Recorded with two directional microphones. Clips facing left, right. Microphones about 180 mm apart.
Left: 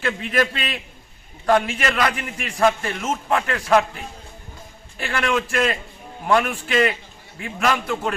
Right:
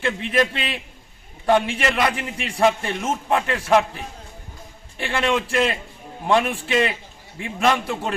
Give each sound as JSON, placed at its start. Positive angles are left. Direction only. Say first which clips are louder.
{"t": 0.0, "sound": "a man's voice", "louder": "right 1 dB", "side_deg": -25}
{"t": 4.9, "sound": "a man's voice", "louder": "right 1 dB", "side_deg": -25}